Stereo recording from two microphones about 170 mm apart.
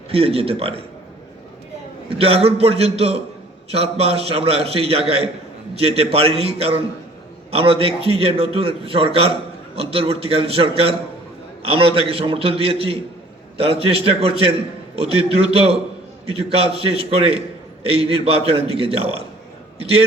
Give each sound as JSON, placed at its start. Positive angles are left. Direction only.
{"t": 0.1, "sound": "a man's voice", "side_deg": -35}
{"t": 2.1, "sound": "a man's voice", "side_deg": -35}